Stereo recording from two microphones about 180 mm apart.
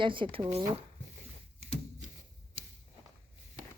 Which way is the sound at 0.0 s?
25° right (ahead or behind).